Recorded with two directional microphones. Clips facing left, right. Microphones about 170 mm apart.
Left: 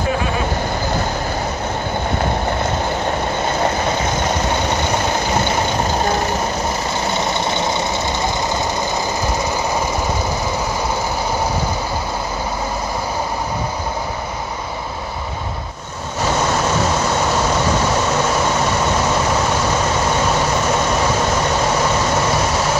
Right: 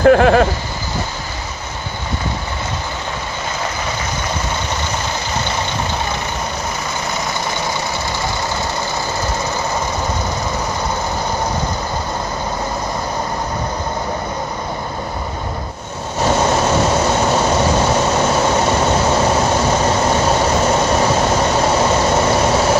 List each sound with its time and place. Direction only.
0.0 s speech: 70° right (ahead or behind)